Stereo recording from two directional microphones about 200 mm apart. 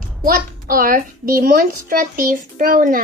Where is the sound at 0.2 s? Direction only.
45° right (ahead or behind).